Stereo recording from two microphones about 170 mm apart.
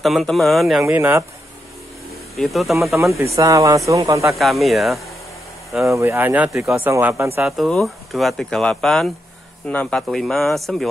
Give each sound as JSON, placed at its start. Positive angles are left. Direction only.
{"t": 0.0, "sound": "speech", "side_deg": 0}
{"t": 0.8, "sound": "speech", "side_deg": -10}
{"t": 2.3, "sound": "speech", "side_deg": 0}
{"t": 3.0, "sound": "speech", "side_deg": -15}
{"t": 4.4, "sound": "speech", "side_deg": 0}
{"t": 5.9, "sound": "speech", "side_deg": -15}
{"t": 7.5, "sound": "speech", "side_deg": 0}